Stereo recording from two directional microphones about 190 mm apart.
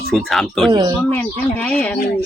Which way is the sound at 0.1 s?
Centre (ahead or behind).